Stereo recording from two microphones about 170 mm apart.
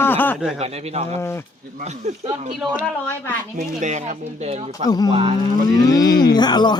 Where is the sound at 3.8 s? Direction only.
45° right (ahead or behind).